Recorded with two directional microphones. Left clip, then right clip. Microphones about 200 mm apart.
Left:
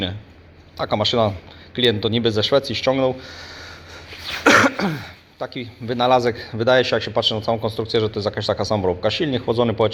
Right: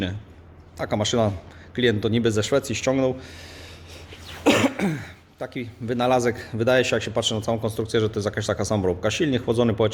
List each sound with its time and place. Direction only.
0.8 s a man's voice: 15° right (ahead or behind)